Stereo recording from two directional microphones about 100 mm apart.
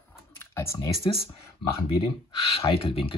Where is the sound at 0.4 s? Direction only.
25° left (ahead or behind).